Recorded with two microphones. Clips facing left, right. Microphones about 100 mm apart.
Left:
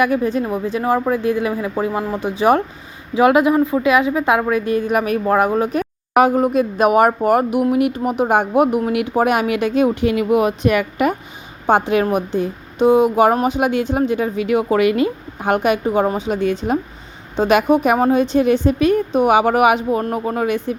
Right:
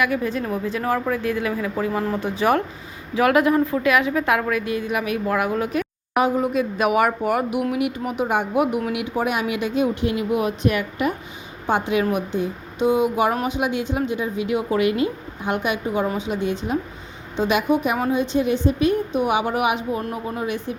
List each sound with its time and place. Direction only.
0.0 s speech: 30° left (ahead or behind)
4.6 s speech: 45° left (ahead or behind)
5.2 s speech: 35° left (ahead or behind)
6.1 s a woman's voice: 55° left (ahead or behind); by 11.1 s 75° left (ahead or behind)
11.6 s a woman's voice: 50° left (ahead or behind)
12.0 s speech: 40° left (ahead or behind)
12.4 s speech: 50° left (ahead or behind); by 15.0 s 70° left (ahead or behind)
15.4 s a woman's voice: 60° left (ahead or behind)